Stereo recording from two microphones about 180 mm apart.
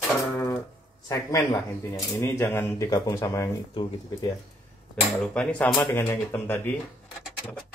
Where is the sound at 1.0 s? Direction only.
20° left (ahead or behind).